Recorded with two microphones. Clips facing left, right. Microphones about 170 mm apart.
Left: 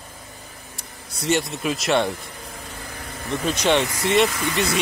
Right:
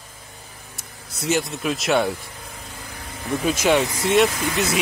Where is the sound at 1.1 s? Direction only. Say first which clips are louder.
Even; centre (ahead or behind).